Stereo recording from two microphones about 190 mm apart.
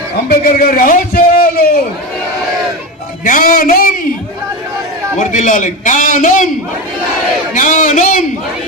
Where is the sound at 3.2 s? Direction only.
45° left (ahead or behind).